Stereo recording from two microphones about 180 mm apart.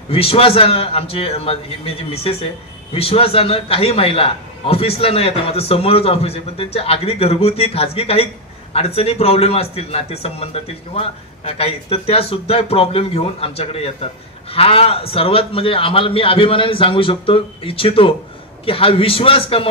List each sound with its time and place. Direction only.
0.1 s a man's voice: 30° left (ahead or behind)